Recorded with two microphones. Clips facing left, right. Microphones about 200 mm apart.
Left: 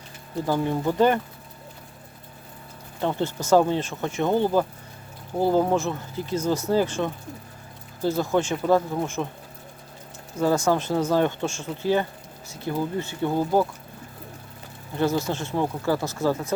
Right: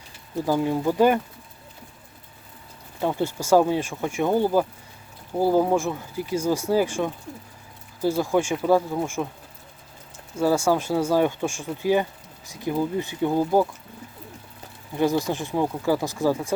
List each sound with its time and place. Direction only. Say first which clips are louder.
0.4 s speech: right 2 dB; 10° right (ahead or behind)
3.0 s speech: right 1 dB; 10° right (ahead or behind)
10.3 s speech: right 1 dB; 10° right (ahead or behind)
14.9 s speech: right 2 dB; 15° right (ahead or behind)